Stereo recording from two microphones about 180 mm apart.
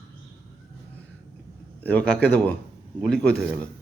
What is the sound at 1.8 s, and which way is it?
Speech, 5° left (ahead or behind).